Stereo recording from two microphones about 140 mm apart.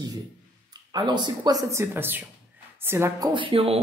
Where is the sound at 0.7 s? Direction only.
30° right (ahead or behind).